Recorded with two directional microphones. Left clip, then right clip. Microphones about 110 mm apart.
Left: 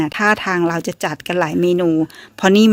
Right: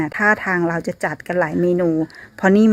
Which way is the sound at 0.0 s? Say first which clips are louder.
Left 1 dB; 15° left (ahead or behind).